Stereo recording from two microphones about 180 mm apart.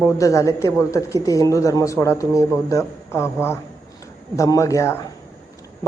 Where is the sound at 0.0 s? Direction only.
15° left (ahead or behind).